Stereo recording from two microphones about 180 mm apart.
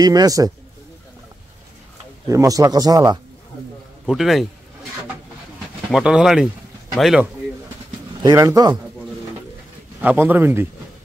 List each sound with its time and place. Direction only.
0.0 s a man's voice: 20° right (ahead or behind)
2.2 s a man's voice: 20° right (ahead or behind)
4.0 s speech: centre (ahead or behind)
5.9 s speech: 5° right (ahead or behind)
8.2 s a man's voice: 20° right (ahead or behind)
10.0 s a man's voice: 10° right (ahead or behind)